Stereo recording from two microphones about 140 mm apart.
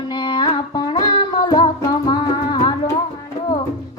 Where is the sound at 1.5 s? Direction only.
30° left (ahead or behind).